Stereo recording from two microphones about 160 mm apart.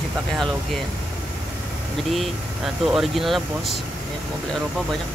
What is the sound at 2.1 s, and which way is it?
Speech, centre (ahead or behind).